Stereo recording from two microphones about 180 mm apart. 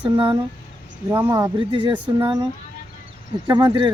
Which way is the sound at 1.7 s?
25° right (ahead or behind).